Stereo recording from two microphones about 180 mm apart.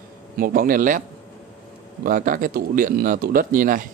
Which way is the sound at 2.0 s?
50° right (ahead or behind).